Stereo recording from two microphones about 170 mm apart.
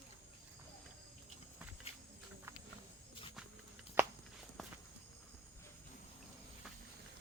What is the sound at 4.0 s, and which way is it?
Walk, 10° right (ahead or behind).